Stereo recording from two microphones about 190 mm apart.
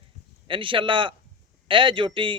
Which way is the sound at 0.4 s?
25° right (ahead or behind).